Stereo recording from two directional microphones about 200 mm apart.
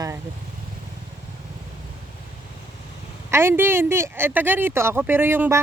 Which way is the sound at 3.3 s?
10° right (ahead or behind).